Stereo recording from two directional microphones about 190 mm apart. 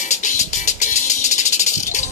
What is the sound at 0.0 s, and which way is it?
Music, 40° left (ahead or behind).